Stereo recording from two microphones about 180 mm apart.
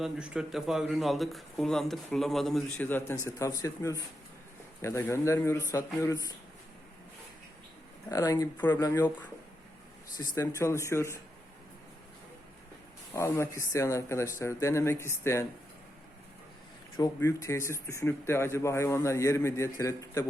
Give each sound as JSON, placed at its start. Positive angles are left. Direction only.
{"t": 0.0, "sound": "speech", "side_deg": -5}
{"t": 8.1, "sound": "speech", "side_deg": 20}
{"t": 10.2, "sound": "speech", "side_deg": 15}
{"t": 13.1, "sound": "speech", "side_deg": 15}
{"t": 17.0, "sound": "speech", "side_deg": 15}